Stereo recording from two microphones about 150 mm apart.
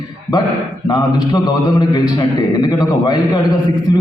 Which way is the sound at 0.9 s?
25° left (ahead or behind).